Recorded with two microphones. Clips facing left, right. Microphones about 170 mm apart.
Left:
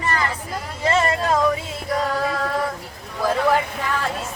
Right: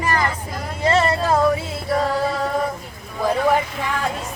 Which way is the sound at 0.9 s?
10° right (ahead or behind).